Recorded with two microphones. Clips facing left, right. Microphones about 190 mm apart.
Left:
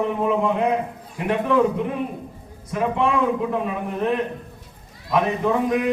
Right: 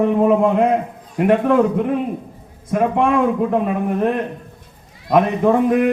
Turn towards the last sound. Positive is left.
turn(degrees=-55)  # may be behind; listen again after turning